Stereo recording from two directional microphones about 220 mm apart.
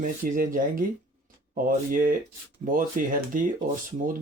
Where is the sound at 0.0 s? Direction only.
40° right (ahead or behind).